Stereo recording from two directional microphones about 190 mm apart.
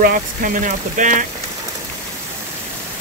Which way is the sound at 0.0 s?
45° right (ahead or behind).